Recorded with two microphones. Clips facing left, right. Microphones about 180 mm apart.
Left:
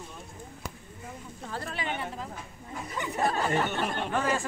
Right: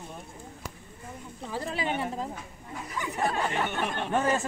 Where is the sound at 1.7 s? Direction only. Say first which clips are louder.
Right 5 dB; 30° right (ahead or behind).